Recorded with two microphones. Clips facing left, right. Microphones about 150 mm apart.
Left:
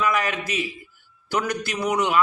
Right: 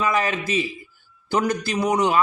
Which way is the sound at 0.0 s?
30° right (ahead or behind).